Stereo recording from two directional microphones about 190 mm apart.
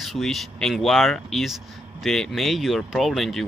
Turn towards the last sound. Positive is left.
turn(degrees=0)  # may be behind; listen again after turning